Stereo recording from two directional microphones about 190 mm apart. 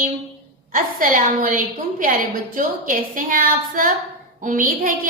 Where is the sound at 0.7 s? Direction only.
45° right (ahead or behind).